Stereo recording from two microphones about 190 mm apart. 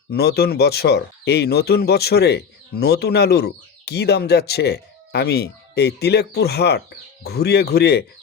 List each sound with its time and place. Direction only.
0.1 s speech: 55° left (ahead or behind)